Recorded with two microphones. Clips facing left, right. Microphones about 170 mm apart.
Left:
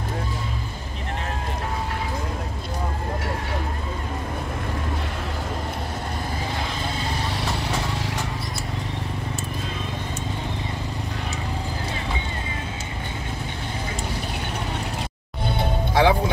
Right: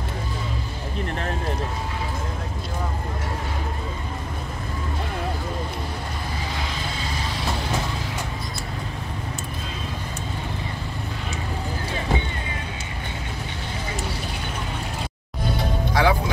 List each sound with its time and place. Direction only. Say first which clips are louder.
15.4 s music: even; 25° left (ahead or behind)